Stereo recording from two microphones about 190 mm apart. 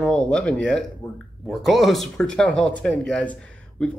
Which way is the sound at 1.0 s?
20° left (ahead or behind).